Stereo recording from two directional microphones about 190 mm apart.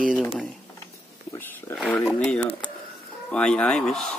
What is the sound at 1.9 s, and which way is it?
Speech, 5° left (ahead or behind).